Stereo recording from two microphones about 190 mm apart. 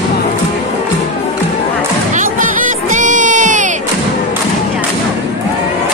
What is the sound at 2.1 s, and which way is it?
Music, 45° right (ahead or behind).